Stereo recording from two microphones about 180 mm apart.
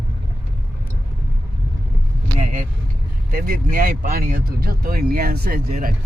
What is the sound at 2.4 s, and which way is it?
Vehicle, 40° right (ahead or behind).